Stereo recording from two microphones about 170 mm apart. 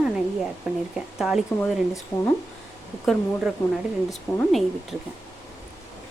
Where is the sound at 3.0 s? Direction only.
Centre (ahead or behind).